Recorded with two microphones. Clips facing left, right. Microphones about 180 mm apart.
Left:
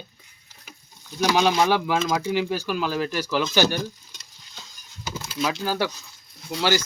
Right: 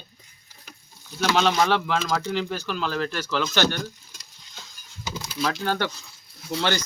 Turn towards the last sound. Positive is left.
turn(degrees=10)  # may be behind; listen again after turning